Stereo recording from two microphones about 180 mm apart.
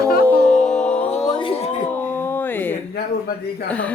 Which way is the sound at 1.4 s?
30° left (ahead or behind).